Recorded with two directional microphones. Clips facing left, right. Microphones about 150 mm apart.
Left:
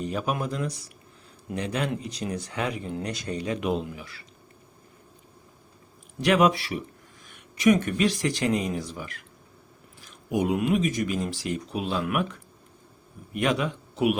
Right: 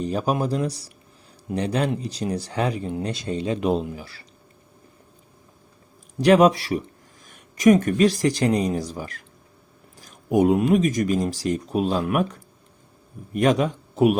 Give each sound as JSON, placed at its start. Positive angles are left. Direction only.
{"t": 0.0, "sound": "speech", "side_deg": -35}
{"t": 6.1, "sound": "speech", "side_deg": -35}
{"t": 10.0, "sound": "a sound", "side_deg": -45}
{"t": 10.6, "sound": "speech", "side_deg": -40}